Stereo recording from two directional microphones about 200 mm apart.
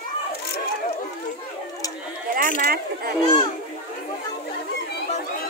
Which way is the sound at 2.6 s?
50° right (ahead or behind).